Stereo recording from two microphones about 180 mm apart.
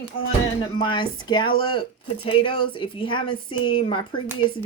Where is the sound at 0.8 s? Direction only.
25° left (ahead or behind).